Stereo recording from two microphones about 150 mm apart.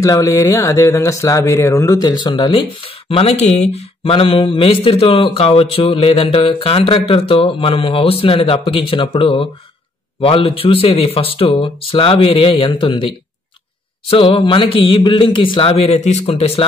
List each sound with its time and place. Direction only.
0.0 s speech: 20° left (ahead or behind); by 16.6 s 40° left (ahead or behind)